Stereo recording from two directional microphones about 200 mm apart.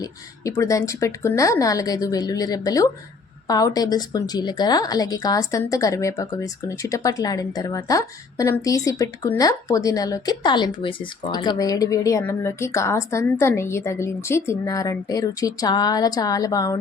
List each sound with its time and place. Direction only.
0.0 s a woman's voice: 15° left (ahead or behind)